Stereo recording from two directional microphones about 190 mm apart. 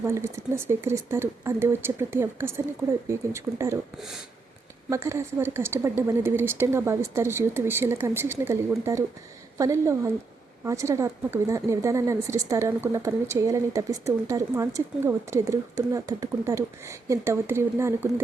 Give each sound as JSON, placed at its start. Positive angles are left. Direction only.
{"t": 0.0, "sound": "a woman's voice", "side_deg": -15}
{"t": 4.9, "sound": "a woman's voice", "side_deg": -15}